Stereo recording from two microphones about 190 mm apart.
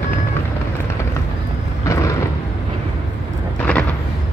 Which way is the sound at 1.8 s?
15° left (ahead or behind).